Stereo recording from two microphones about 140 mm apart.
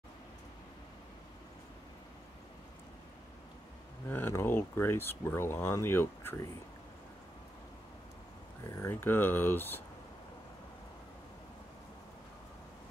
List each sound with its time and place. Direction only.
4.1 s speech: 15° left (ahead or behind)
8.6 s speech: 20° left (ahead or behind)